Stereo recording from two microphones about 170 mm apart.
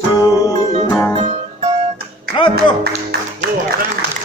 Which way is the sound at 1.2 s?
40° right (ahead or behind).